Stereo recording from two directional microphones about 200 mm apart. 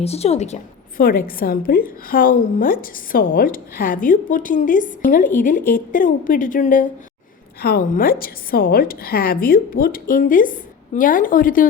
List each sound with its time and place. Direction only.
0.0 s a woman's voice: 30° left (ahead or behind)